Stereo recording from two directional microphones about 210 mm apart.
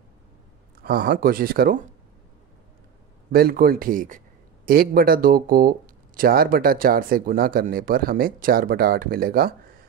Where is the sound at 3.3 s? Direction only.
45° right (ahead or behind).